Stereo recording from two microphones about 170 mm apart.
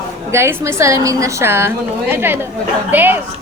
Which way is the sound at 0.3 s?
15° right (ahead or behind).